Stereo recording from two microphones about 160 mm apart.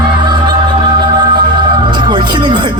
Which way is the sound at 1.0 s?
30° right (ahead or behind).